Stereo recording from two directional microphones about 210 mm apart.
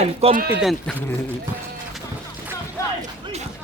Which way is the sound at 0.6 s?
Centre (ahead or behind).